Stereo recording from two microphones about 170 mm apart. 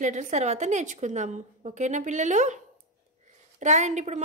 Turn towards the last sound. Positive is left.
turn(degrees=-45)  # may be behind; listen again after turning